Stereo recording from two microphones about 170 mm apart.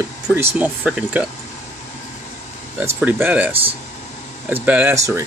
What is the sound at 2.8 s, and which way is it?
Speech, 10° right (ahead or behind).